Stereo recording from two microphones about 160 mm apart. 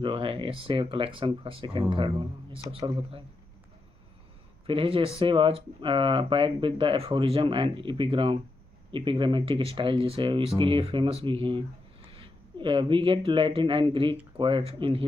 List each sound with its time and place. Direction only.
0.0 s speech: 35° right (ahead or behind)
4.6 s speech: 35° right (ahead or behind)